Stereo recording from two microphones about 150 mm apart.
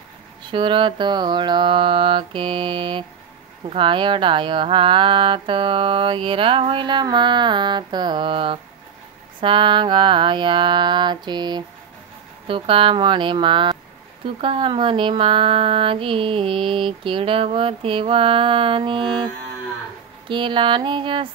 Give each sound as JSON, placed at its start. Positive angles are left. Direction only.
{"t": 0.5, "sound": "speech", "side_deg": -35}
{"t": 20.2, "sound": "speech", "side_deg": -35}